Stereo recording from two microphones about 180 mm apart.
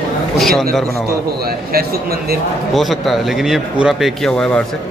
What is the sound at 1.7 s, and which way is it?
Speech, 60° right (ahead or behind).